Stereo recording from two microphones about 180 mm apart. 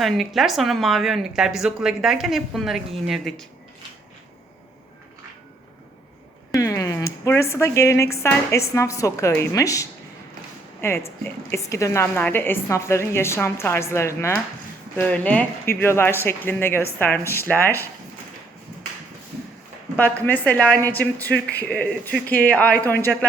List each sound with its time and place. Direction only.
0.0 s a woman's voice: centre (ahead or behind)
6.5 s a woman's voice: 20° left (ahead or behind)
20.0 s speech: 10° left (ahead or behind)